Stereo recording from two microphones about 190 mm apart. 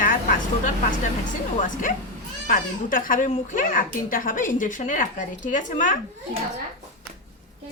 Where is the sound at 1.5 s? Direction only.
45° left (ahead or behind).